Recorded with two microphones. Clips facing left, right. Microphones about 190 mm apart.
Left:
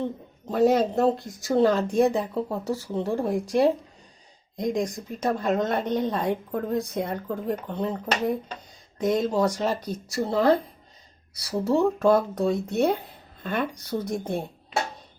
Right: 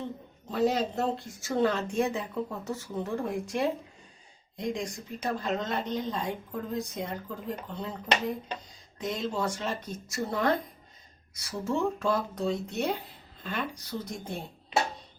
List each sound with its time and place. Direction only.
0.4 s a woman's voice: 50° left (ahead or behind)